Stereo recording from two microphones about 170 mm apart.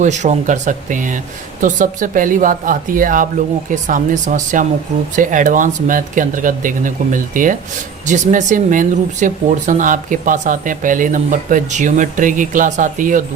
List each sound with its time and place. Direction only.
0.0 s speech: 45° right (ahead or behind)